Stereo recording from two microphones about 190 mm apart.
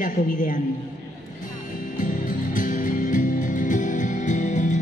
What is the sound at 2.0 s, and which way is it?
Music, 45° left (ahead or behind).